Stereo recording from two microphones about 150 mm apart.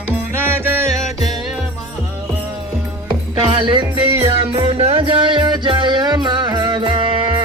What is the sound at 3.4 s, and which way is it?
Music, 30° right (ahead or behind).